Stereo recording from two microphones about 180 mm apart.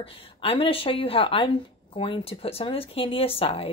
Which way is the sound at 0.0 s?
30° left (ahead or behind).